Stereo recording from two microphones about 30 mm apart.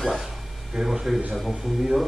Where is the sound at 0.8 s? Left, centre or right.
Centre.